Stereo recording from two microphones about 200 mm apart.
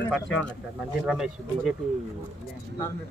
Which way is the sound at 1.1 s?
Centre (ahead or behind).